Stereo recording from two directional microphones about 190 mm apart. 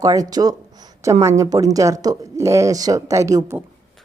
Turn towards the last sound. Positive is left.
turn(degrees=-15)  # may be behind; listen again after turning